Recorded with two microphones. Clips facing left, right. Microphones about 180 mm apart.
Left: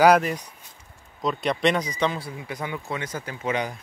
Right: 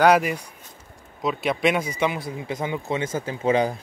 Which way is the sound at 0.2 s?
10° right (ahead or behind).